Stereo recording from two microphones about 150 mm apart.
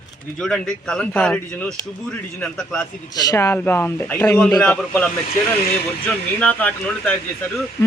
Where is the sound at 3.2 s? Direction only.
20° left (ahead or behind).